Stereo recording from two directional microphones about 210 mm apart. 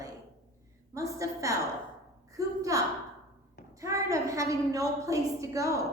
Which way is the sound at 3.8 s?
15° right (ahead or behind).